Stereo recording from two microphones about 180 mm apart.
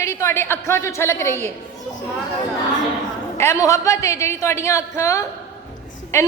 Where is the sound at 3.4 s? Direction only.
15° left (ahead or behind).